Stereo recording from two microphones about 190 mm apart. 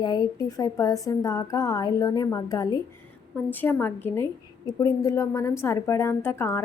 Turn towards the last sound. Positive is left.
turn(degrees=15)  # may be behind; listen again after turning